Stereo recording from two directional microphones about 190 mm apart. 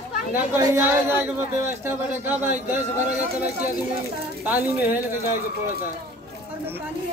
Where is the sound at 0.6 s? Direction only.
10° right (ahead or behind).